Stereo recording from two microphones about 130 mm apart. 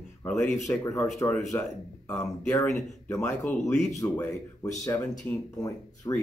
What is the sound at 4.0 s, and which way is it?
Speech, 20° left (ahead or behind).